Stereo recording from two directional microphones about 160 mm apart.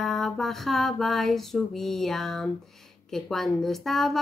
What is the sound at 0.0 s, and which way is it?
Speech, centre (ahead or behind).